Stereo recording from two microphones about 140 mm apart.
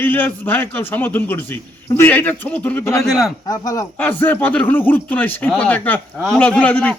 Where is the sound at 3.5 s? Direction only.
25° left (ahead or behind).